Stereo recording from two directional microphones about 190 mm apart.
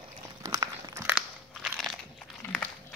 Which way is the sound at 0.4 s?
20° right (ahead or behind).